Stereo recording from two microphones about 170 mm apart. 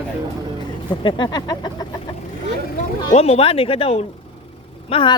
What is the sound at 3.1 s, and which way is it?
A woman's voice, 35° left (ahead or behind).